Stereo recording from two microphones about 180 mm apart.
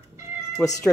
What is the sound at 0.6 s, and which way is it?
Speech, 20° left (ahead or behind).